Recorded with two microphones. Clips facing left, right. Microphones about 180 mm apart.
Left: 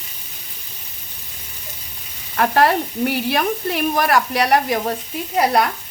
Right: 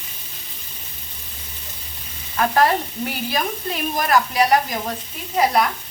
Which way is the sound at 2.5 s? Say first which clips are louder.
Left 2 dB; 65° left (ahead or behind).